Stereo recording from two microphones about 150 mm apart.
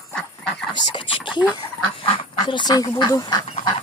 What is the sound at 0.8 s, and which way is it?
Speech, 30° left (ahead or behind).